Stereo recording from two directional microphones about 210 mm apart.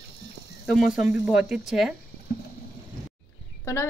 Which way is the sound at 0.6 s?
Centre (ahead or behind).